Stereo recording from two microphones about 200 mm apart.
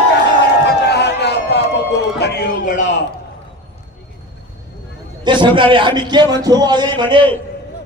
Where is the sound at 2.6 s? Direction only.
40° left (ahead or behind).